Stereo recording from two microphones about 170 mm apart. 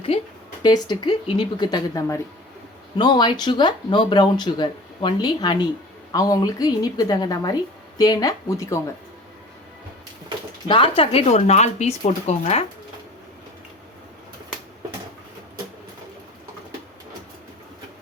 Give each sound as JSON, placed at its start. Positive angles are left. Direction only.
{"t": 0.6, "sound": "speech", "side_deg": 25}
{"t": 10.7, "sound": "speech", "side_deg": 30}